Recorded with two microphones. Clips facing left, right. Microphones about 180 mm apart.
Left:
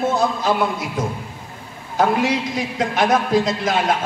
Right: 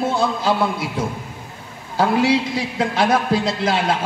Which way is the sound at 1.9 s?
30° right (ahead or behind).